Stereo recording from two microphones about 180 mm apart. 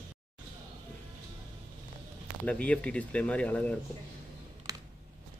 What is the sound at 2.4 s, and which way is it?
Speech, 5° left (ahead or behind).